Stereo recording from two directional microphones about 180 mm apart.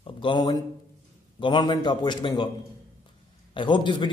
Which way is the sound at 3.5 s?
25° left (ahead or behind).